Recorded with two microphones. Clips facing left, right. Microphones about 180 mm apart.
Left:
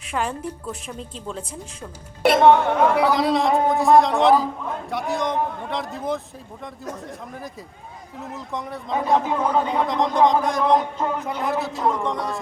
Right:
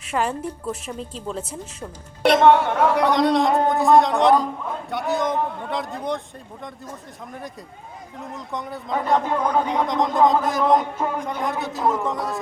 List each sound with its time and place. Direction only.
0.1 s speech: centre (ahead or behind)
8.3 s speech: centre (ahead or behind)